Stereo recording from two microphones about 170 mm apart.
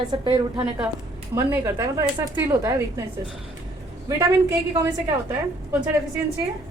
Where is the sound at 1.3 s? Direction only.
15° right (ahead or behind).